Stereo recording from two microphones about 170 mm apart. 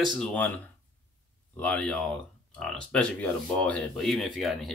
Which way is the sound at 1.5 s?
10° left (ahead or behind).